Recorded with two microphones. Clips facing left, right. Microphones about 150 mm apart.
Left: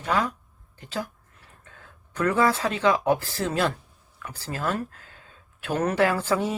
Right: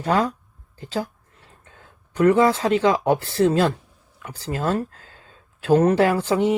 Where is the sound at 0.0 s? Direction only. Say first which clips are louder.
Right 5 dB; 35° right (ahead or behind).